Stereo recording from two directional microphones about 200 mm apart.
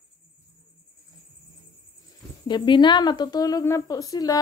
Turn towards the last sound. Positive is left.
turn(degrees=20)  # may be behind; listen again after turning